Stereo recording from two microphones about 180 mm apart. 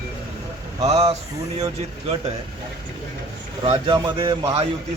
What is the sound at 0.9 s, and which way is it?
Speech, 35° right (ahead or behind).